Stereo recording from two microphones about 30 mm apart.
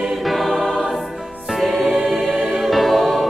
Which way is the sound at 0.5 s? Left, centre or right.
Centre.